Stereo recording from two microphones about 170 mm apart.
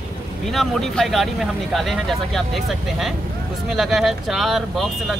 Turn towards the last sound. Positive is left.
turn(degrees=0)  # may be behind; listen again after turning